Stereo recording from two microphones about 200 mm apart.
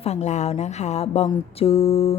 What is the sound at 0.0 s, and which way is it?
Speech, 35° left (ahead or behind).